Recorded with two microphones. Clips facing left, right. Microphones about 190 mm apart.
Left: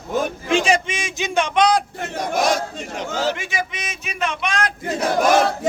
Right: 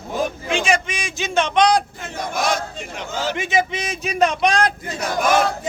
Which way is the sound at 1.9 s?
50° left (ahead or behind).